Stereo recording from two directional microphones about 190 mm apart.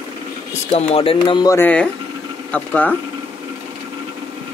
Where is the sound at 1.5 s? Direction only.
10° left (ahead or behind).